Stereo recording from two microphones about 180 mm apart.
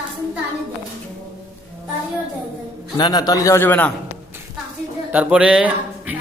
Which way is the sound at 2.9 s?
25° left (ahead or behind).